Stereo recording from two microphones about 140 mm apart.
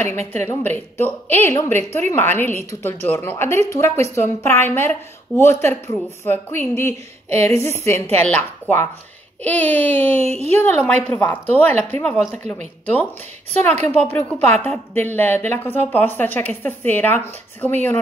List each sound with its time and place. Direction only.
0.3 s speech: 15° left (ahead or behind)
13.5 s speech: 15° left (ahead or behind)